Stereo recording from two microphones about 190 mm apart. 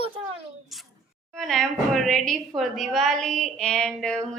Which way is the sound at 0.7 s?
Centre (ahead or behind).